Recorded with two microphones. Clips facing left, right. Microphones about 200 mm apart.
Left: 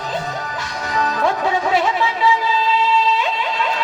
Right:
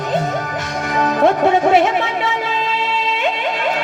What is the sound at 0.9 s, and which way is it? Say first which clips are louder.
Speech: right 5 dB; 55° right (ahead or behind).